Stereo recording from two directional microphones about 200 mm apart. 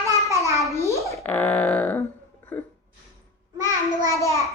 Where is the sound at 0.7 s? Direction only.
15° left (ahead or behind).